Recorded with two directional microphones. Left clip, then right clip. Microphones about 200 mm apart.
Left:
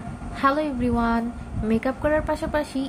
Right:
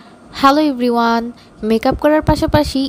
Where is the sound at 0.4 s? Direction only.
45° right (ahead or behind).